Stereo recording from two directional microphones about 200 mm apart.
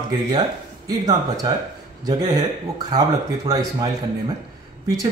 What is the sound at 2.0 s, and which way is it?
Speech, 20° right (ahead or behind).